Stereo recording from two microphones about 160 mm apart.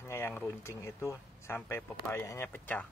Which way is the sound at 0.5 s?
20° left (ahead or behind).